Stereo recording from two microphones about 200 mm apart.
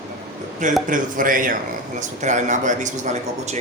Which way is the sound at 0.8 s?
40° right (ahead or behind).